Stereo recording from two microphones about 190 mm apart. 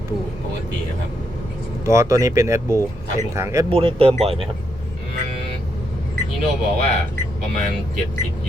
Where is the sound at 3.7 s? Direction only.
30° right (ahead or behind).